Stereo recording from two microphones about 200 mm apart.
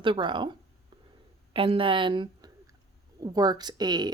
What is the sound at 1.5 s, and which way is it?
Speech, 25° right (ahead or behind).